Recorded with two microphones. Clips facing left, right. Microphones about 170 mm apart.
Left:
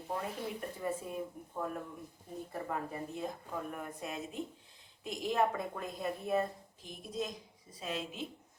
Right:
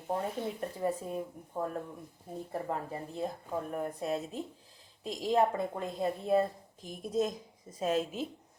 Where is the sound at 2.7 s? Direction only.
35° right (ahead or behind).